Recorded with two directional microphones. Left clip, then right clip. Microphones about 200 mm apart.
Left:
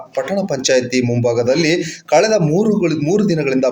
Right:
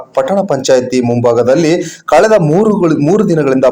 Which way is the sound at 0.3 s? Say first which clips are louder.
Right 4 dB; 15° right (ahead or behind).